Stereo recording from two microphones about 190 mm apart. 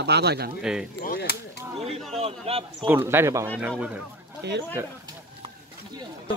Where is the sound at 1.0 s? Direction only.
50° left (ahead or behind).